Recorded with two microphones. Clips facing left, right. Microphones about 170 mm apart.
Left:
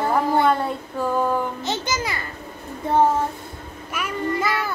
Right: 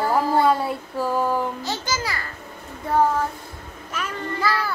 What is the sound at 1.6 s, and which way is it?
Speech, 20° left (ahead or behind).